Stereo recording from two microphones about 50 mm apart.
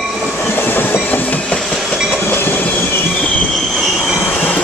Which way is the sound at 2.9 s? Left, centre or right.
Left.